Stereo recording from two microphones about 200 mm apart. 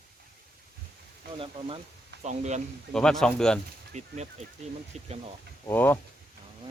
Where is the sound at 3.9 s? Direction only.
35° right (ahead or behind).